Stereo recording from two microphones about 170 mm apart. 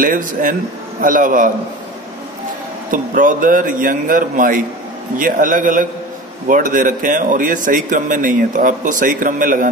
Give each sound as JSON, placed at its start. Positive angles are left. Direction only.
{"t": 0.0, "sound": "speech", "side_deg": -55}
{"t": 2.9, "sound": "speech", "side_deg": -50}